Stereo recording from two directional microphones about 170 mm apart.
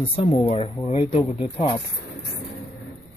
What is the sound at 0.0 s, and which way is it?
Speech, 35° left (ahead or behind).